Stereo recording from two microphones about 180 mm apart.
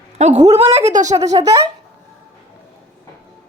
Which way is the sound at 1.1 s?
20° right (ahead or behind).